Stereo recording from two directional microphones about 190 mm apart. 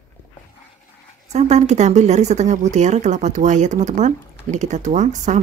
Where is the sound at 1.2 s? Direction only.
35° right (ahead or behind).